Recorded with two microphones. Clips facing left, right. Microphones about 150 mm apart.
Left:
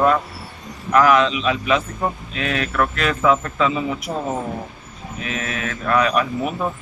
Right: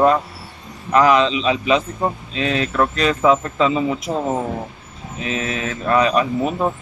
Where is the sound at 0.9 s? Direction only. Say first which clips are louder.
Right 1 dB; 25° right (ahead or behind).